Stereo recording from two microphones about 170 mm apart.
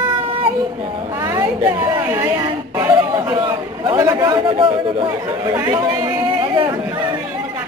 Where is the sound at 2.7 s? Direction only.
15° right (ahead or behind).